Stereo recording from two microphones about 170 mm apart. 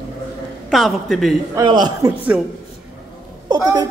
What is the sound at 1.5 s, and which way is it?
Speech, 25° right (ahead or behind).